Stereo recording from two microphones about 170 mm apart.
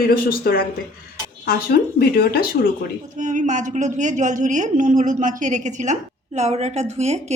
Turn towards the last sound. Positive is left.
turn(degrees=-40)  # may be behind; listen again after turning